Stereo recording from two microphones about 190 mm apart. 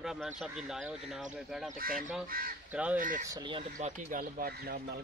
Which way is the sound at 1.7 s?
50° right (ahead or behind).